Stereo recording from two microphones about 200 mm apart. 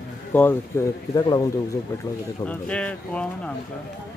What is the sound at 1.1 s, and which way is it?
Speech, 20° left (ahead or behind).